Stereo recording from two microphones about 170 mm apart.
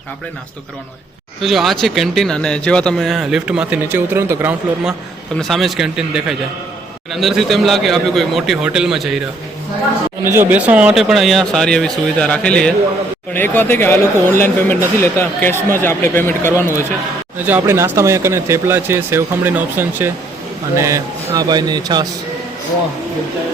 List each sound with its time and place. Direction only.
1.4 s speech: centre (ahead or behind)
5.4 s speech: centre (ahead or behind)
10.3 s speech: 10° right (ahead or behind); by 16.8 s 15° left (ahead or behind)
17.4 s speech: 15° right (ahead or behind)